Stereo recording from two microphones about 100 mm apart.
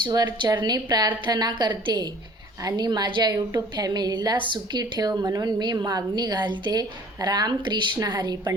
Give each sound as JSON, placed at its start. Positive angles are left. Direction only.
{"t": 0.0, "sound": "a woman's voice", "side_deg": -45}